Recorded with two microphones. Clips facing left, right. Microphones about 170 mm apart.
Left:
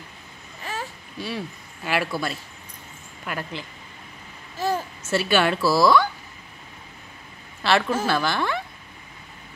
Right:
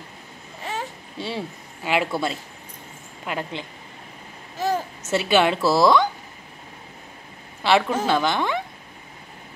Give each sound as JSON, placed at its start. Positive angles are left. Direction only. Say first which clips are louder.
{"t": 0.7, "sound": "a sound", "louder": "right 2 dB", "side_deg": -25}
{"t": 1.8, "sound": "speech", "louder": "right 2 dB", "side_deg": -20}
{"t": 4.6, "sound": "babbling", "louder": "right 1 dB", "side_deg": -20}
{"t": 5.1, "sound": "speech", "louder": "right 2 dB", "side_deg": -20}
{"t": 7.6, "sound": "speech", "louder": "right 2 dB", "side_deg": -15}